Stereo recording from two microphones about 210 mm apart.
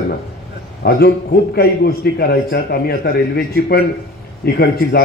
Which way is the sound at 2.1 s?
50° left (ahead or behind).